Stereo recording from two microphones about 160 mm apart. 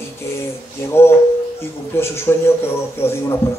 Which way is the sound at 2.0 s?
15° left (ahead or behind).